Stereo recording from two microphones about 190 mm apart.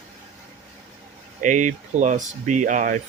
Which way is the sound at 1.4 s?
40° right (ahead or behind).